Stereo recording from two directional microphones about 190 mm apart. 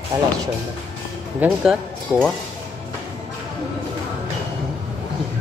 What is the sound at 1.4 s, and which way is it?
Speech, centre (ahead or behind).